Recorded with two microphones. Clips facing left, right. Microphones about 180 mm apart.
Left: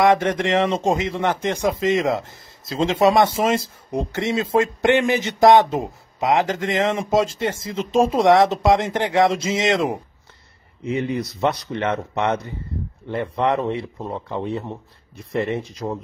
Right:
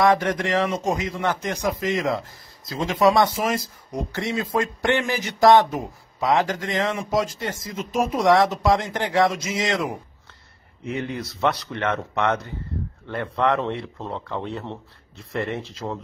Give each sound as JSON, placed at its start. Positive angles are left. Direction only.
{"t": 0.0, "sound": "speech", "side_deg": 25}
{"t": 11.1, "sound": "speech", "side_deg": 15}